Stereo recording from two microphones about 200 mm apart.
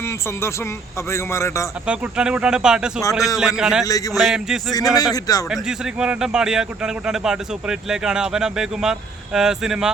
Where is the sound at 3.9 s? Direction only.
15° left (ahead or behind).